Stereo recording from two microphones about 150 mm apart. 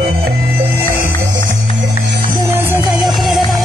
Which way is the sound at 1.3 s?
60° right (ahead or behind).